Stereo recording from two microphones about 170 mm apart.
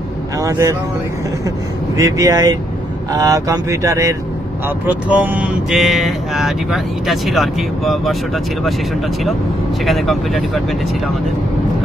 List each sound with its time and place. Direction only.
0.4 s speech: 20° right (ahead or behind)
2.0 s speech: 20° right (ahead or behind); by 8.2 s centre (ahead or behind)
9.8 s speech: centre (ahead or behind)